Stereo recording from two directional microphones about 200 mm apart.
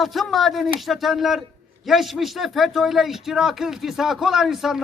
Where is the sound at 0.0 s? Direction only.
Centre (ahead or behind).